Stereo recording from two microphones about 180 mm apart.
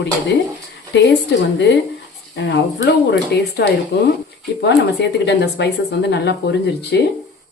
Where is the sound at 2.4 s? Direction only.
75° left (ahead or behind).